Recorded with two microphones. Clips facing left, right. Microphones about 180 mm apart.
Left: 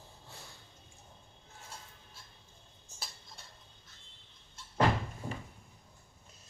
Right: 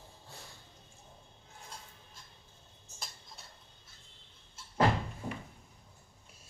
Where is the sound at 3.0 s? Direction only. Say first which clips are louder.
Even; centre (ahead or behind).